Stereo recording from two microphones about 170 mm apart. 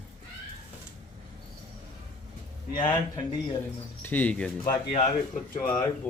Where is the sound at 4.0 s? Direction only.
10° left (ahead or behind).